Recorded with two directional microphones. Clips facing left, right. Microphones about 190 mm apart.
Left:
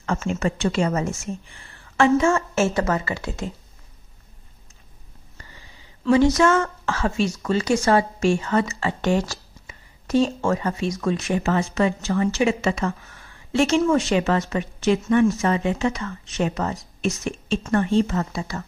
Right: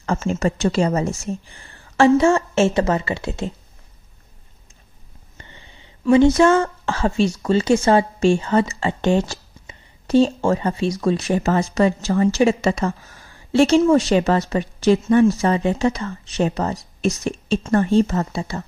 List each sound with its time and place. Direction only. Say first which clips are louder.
0.0 s a woman's voice: right 3 dB; 35° right (ahead or behind)
5.4 s a sound: right 2 dB; 25° right (ahead or behind)
6.2 s a woman's voice: right 4 dB; 30° right (ahead or behind)